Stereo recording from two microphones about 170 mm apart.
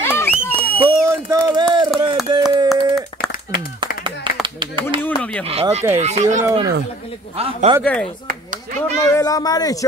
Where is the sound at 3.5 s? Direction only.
30° right (ahead or behind).